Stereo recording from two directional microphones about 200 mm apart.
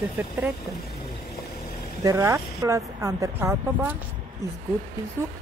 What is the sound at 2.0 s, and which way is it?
Speech, 15° right (ahead or behind).